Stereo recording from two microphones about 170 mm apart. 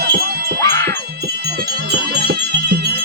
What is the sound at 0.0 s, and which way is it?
Music, 65° right (ahead or behind).